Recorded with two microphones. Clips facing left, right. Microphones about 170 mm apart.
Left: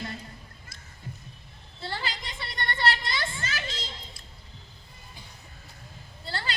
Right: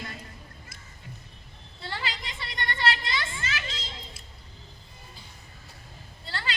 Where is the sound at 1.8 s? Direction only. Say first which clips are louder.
Left 1 dB; 40° left (ahead or behind).